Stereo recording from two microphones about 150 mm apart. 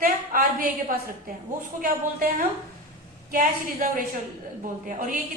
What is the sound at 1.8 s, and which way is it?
Speech, 70° right (ahead or behind).